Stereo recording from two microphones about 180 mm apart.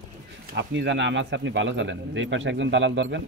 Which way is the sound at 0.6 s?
90° right.